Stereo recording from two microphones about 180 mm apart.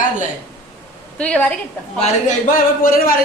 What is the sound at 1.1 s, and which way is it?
Speech, 5° left (ahead or behind).